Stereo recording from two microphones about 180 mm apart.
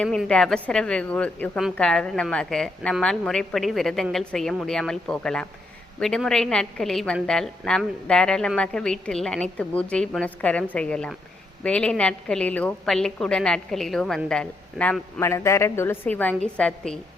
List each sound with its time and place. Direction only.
0.0 s a woman's voice: 5° left (ahead or behind)